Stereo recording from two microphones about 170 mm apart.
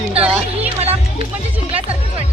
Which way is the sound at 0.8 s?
35° right (ahead or behind).